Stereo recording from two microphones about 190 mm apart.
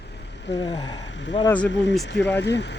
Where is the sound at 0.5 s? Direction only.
20° left (ahead or behind).